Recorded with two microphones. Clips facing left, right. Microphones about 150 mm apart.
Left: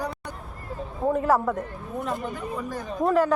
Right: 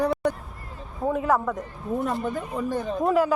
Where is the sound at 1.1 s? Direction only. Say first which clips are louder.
Left 1 dB; 5° left (ahead or behind).